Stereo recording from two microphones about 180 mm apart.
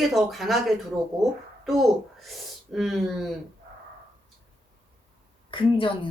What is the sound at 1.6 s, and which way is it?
Speech, centre (ahead or behind).